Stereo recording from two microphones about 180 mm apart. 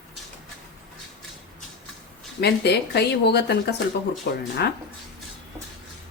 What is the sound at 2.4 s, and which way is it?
Speech, 65° left (ahead or behind).